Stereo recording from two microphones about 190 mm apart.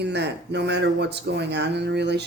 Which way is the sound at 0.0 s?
60° right (ahead or behind).